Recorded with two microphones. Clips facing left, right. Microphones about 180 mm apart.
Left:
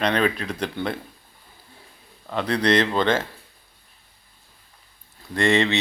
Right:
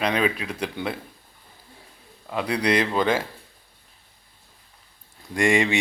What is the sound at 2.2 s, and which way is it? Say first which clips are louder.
Speech: left 2 dB; 10° right (ahead or behind).